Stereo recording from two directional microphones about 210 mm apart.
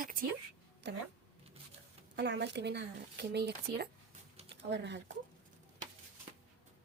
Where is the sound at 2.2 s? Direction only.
55° right (ahead or behind).